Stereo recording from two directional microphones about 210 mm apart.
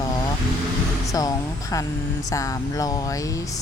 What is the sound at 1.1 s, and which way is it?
Speech, 15° left (ahead or behind).